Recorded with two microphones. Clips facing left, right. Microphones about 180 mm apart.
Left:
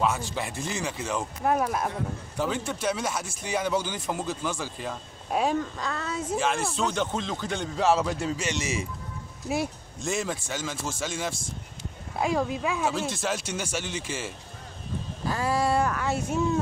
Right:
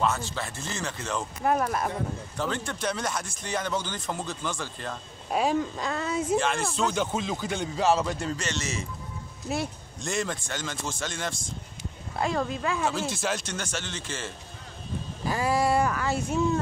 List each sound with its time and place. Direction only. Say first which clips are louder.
0.0 s speech: left 1 dB; 10° left (ahead or behind)
5.8 s speech: right 3 dB; 15° right (ahead or behind)
6.3 s speech: left 1 dB; 5° left (ahead or behind)
15.2 s speech: right 1 dB; 10° right (ahead or behind)